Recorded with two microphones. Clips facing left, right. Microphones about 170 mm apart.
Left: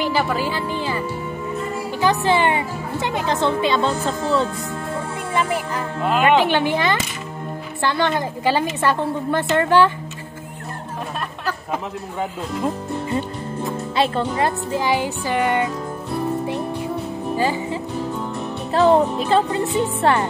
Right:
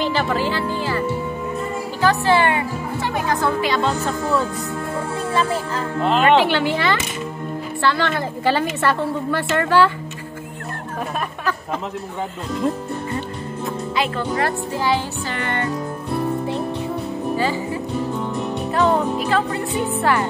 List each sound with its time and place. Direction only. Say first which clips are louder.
0.0 s speech: even; 10° left (ahead or behind); by 4.5 s 30° left (ahead or behind)
5.3 s speech: even; 15° left (ahead or behind)
13.9 s speech: left 4 dB; 30° left (ahead or behind)
14.3 s speech: left 1 dB; 15° left (ahead or behind)
17.4 s music: left 3 dB; 15° left (ahead or behind)
18.7 s music: left 4 dB; 30° left (ahead or behind)
19.2 s speech: left 2 dB; 25° left (ahead or behind)